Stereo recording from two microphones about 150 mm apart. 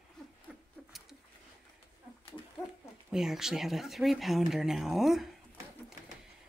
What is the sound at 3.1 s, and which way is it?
Speech, 5° right (ahead or behind).